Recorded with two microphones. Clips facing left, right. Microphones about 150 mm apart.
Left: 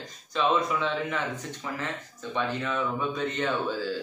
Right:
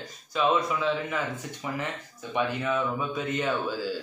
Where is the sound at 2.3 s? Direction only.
10° right (ahead or behind).